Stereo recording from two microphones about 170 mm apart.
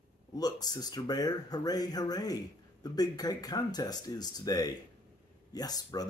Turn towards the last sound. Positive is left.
turn(degrees=20)  # may be behind; listen again after turning